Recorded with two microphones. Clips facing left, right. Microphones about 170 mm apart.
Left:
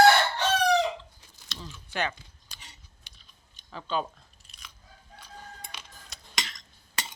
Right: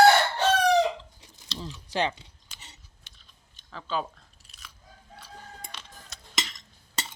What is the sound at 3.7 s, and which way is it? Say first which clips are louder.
Speech: left 1 dB; centre (ahead or behind).